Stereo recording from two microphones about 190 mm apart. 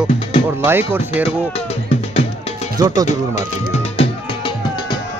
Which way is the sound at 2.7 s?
20° right (ahead or behind).